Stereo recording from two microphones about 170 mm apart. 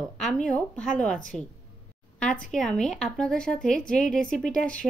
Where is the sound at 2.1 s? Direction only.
5° left (ahead or behind).